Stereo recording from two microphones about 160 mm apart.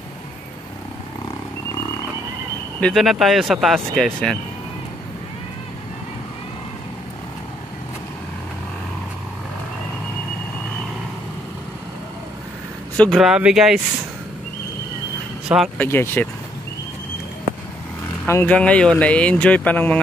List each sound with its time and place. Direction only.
2.8 s speech: centre (ahead or behind)
12.9 s speech: 5° left (ahead or behind)
15.4 s speech: 5° right (ahead or behind)
15.8 s speech: 15° left (ahead or behind)
18.2 s speech: 15° left (ahead or behind)